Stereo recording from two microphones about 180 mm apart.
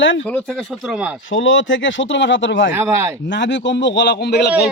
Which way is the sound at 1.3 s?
90° left.